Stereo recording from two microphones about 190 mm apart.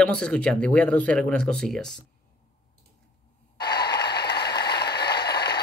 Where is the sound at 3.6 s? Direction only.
55° left (ahead or behind).